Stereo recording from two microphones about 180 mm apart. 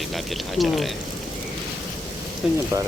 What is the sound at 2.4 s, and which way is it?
Speech, 5° right (ahead or behind).